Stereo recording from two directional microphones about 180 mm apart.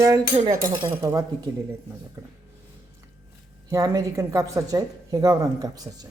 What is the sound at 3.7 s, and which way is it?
Speech, 15° right (ahead or behind).